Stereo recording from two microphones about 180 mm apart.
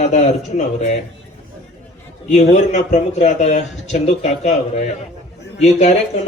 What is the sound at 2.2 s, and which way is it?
Speech, 40° left (ahead or behind).